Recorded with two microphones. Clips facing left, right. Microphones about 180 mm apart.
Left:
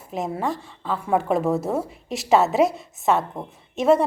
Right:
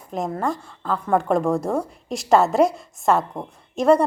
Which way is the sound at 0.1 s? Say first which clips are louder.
Right 1 dB; 5° left (ahead or behind).